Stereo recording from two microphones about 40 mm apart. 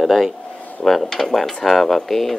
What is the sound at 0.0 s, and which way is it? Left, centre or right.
Speech, centre.